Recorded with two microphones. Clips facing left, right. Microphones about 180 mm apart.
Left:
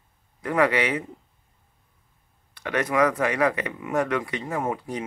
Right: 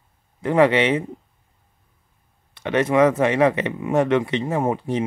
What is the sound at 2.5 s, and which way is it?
Speech, 25° right (ahead or behind).